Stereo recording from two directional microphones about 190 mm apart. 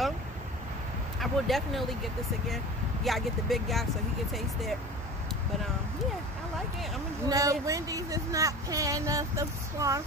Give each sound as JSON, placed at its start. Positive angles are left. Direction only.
{"t": 1.2, "sound": "speech", "side_deg": 0}
{"t": 7.2, "sound": "speech", "side_deg": -20}